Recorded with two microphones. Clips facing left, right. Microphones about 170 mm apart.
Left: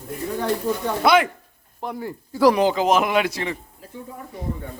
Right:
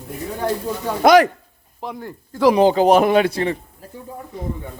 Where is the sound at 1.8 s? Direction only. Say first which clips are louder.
Left 1 dB; 5° left (ahead or behind).